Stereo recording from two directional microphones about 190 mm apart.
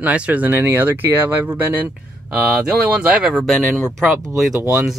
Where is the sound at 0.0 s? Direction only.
5° right (ahead or behind).